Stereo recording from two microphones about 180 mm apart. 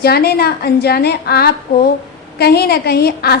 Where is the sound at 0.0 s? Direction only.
60° left (ahead or behind).